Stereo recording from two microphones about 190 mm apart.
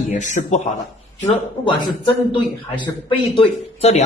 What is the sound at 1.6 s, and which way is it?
Speech, 25° left (ahead or behind).